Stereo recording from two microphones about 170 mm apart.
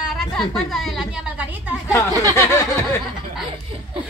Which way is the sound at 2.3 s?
15° left (ahead or behind).